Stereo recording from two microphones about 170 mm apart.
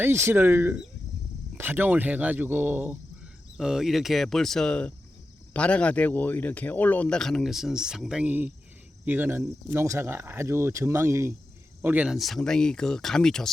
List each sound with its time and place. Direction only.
0.0 s speech: 15° right (ahead or behind); by 13.5 s 5° left (ahead or behind)